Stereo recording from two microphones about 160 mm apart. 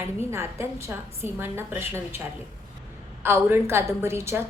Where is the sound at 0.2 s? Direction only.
15° right (ahead or behind).